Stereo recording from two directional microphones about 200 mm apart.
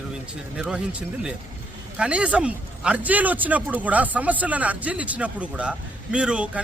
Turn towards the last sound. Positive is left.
turn(degrees=-5)  # may be behind; listen again after turning